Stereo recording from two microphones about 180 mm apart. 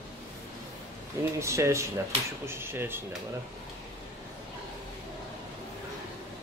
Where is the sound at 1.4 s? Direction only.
15° right (ahead or behind).